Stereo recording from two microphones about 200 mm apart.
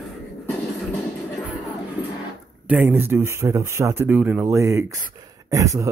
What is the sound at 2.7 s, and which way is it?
Speech, 10° right (ahead or behind).